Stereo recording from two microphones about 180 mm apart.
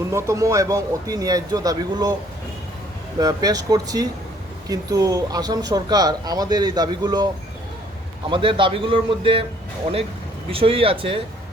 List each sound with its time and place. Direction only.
0.1 s speech: 15° right (ahead or behind)
3.2 s speech: 20° right (ahead or behind)
8.3 s speech: 30° right (ahead or behind)
10.5 s speech: 30° right (ahead or behind)